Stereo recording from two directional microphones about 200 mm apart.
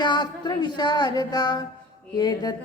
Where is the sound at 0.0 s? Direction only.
20° left (ahead or behind).